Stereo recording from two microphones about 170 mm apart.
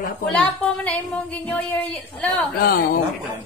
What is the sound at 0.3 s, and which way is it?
Speech, 10° left (ahead or behind).